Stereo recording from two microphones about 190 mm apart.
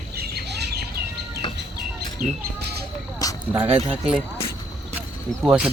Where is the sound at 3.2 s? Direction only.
20° left (ahead or behind).